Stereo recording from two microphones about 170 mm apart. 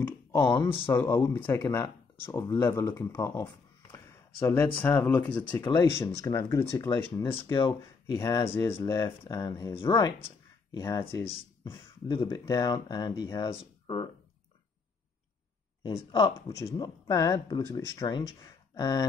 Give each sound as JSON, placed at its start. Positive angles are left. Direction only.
{"t": 0.0, "sound": "speech", "side_deg": 15}
{"t": 1.8, "sound": "speech", "side_deg": 25}
{"t": 3.9, "sound": "a sound", "side_deg": 15}
{"t": 4.7, "sound": "speech", "side_deg": 10}
{"t": 5.6, "sound": "speech", "side_deg": 20}
{"t": 7.3, "sound": "speech", "side_deg": 30}
{"t": 11.2, "sound": "speech", "side_deg": 30}
{"t": 15.8, "sound": "speech", "side_deg": 30}